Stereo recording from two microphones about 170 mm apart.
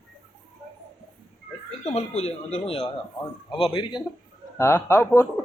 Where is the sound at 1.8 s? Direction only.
40° left (ahead or behind).